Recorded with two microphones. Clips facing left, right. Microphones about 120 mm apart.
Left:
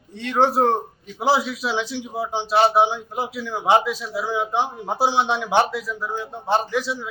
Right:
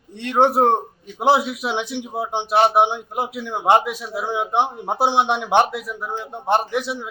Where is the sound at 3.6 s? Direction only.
55° right (ahead or behind).